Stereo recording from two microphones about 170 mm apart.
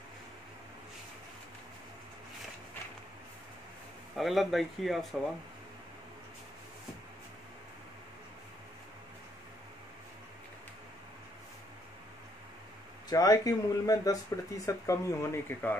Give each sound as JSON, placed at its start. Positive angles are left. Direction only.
{"t": 4.1, "sound": "speech", "side_deg": 0}
{"t": 13.1, "sound": "speech", "side_deg": 20}